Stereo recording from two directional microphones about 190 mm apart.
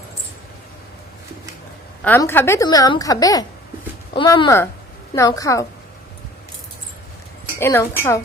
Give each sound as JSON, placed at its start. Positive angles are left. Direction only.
{"t": 2.0, "sound": "a woman's voice", "side_deg": 10}
{"t": 7.6, "sound": "a woman's voice", "side_deg": 10}